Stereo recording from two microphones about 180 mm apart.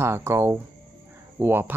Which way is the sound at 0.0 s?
15° right (ahead or behind).